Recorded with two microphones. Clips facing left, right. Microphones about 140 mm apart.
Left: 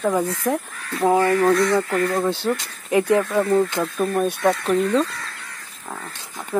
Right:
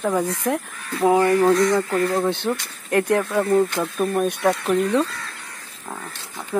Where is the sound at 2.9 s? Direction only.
5° left (ahead or behind).